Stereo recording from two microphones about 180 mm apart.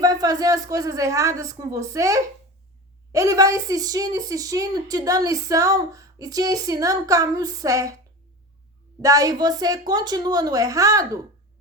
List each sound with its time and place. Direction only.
0.0 s a woman's voice: 20° right (ahead or behind)
9.0 s a woman's voice: 20° right (ahead or behind)